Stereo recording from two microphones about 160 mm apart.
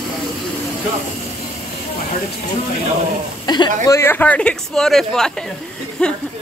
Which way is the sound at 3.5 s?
25° left (ahead or behind).